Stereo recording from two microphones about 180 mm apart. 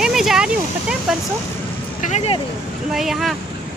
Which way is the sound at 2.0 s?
35° left (ahead or behind).